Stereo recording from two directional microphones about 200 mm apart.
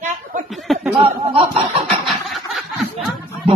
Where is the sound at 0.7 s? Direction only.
Centre (ahead or behind).